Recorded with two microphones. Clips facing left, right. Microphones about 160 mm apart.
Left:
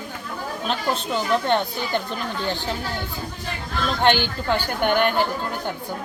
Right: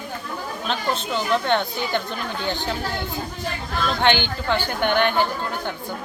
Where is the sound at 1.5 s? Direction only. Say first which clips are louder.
Even; 5° left (ahead or behind).